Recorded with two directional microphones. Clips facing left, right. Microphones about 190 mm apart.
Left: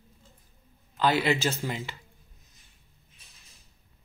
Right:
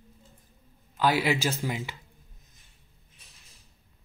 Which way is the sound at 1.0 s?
10° right (ahead or behind).